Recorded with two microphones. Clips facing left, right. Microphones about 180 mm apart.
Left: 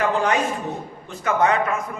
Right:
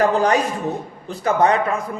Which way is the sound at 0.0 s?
40° right (ahead or behind).